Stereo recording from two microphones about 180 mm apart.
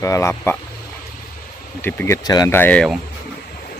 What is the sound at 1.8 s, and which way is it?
Speech, 15° left (ahead or behind).